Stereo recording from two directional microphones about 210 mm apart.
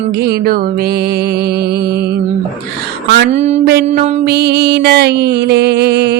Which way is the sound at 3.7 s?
50° right (ahead or behind).